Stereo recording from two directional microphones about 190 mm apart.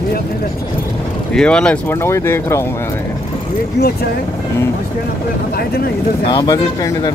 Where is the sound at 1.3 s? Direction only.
5° left (ahead or behind).